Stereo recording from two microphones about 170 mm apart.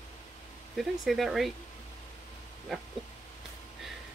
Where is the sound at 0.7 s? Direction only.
Centre (ahead or behind).